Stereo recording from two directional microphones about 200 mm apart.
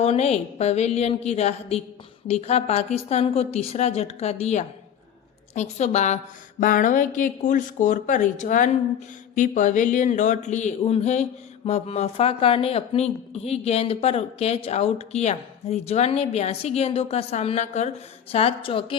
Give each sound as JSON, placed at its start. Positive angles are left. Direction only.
{"t": 0.0, "sound": "speech", "side_deg": 35}